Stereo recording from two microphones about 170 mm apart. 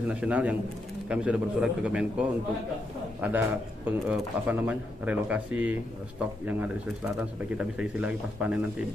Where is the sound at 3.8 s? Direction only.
5° right (ahead or behind).